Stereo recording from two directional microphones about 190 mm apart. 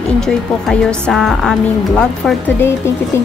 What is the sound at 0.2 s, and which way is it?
A woman's voice, 5° left (ahead or behind).